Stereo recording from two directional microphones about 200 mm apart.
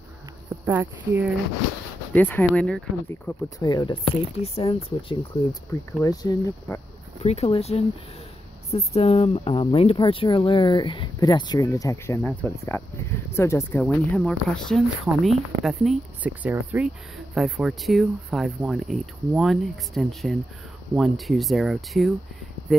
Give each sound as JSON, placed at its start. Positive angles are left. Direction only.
{"t": 0.7, "sound": "speech", "side_deg": -10}
{"t": 2.1, "sound": "speech", "side_deg": 10}
{"t": 7.2, "sound": "speech", "side_deg": 30}
{"t": 12.2, "sound": "speech", "side_deg": 5}